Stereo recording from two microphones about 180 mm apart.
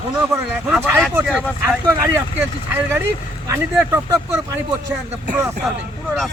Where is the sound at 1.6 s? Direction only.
10° right (ahead or behind).